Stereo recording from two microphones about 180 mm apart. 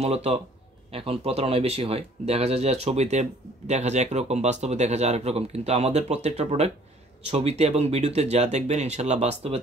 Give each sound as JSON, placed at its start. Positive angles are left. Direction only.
{"t": 0.0, "sound": "speech", "side_deg": -35}